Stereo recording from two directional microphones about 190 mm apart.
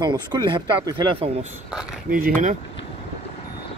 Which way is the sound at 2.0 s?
50° right (ahead or behind).